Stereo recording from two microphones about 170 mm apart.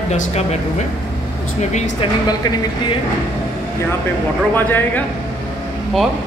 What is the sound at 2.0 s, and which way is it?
Speech, 25° left (ahead or behind).